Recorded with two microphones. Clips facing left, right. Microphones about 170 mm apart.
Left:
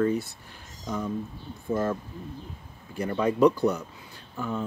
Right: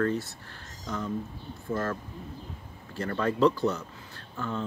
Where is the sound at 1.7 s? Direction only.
15° left (ahead or behind).